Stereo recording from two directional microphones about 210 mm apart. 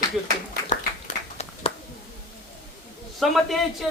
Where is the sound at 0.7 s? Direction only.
30° left (ahead or behind).